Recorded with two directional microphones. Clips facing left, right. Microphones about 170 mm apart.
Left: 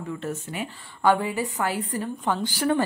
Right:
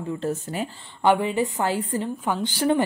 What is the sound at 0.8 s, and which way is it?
Speech, 20° right (ahead or behind).